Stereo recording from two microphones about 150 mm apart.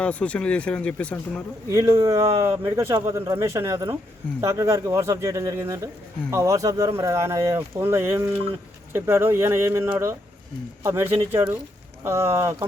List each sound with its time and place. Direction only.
0.0 s speech: 10° left (ahead or behind)
1.7 s speech: 20° right (ahead or behind)